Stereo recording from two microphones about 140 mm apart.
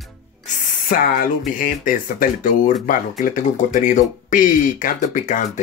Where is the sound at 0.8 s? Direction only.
80° left.